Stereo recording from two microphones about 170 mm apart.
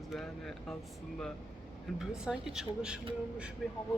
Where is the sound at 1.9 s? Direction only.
5° right (ahead or behind).